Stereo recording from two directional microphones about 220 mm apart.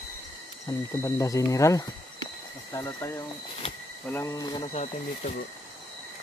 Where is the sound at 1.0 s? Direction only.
15° left (ahead or behind).